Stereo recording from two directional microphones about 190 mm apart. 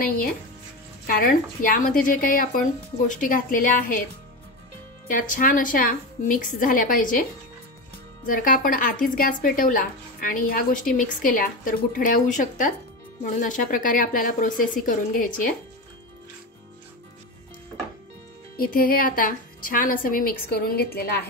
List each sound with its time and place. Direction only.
1.0 s speech: 50° left (ahead or behind)
5.0 s speech: 45° left (ahead or behind)
8.3 s speech: 45° left (ahead or behind)
18.6 s speech: 50° left (ahead or behind)